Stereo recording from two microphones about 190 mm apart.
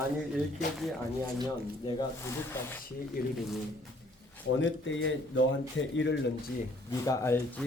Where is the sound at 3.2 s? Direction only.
50° left (ahead or behind).